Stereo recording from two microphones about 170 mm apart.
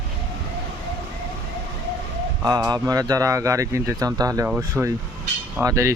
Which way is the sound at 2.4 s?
20° right (ahead or behind).